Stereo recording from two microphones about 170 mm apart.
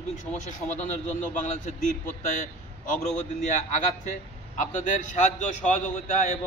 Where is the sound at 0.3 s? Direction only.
45° left (ahead or behind).